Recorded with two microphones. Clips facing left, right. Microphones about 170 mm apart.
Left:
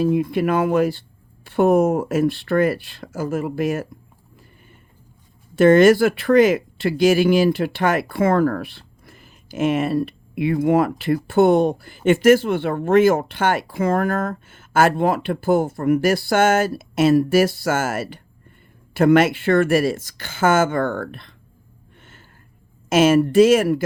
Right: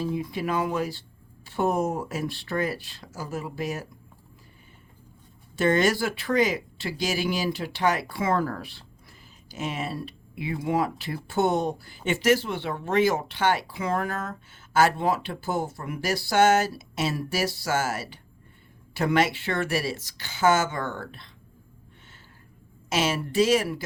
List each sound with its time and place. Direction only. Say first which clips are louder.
0.0 s speech: left 10 dB; 60° left (ahead or behind)
5.5 s speech: left 11 dB; 55° left (ahead or behind)
22.9 s speech: left 12 dB; 50° left (ahead or behind)